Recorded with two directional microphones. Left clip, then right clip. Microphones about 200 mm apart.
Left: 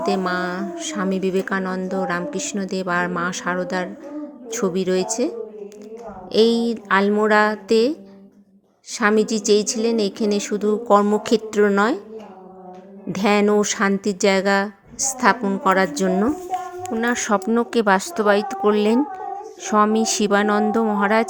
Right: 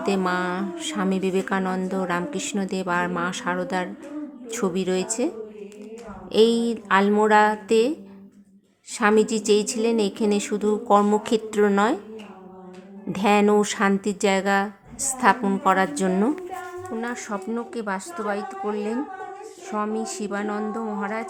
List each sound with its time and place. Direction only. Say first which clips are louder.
0.0 s speech: left 2 dB; 10° left (ahead or behind)
6.3 s speech: left 2 dB; 15° left (ahead or behind)
13.1 s speech: left 1 dB; 15° left (ahead or behind)
17.0 s a woman's voice: left 12 dB; 35° left (ahead or behind)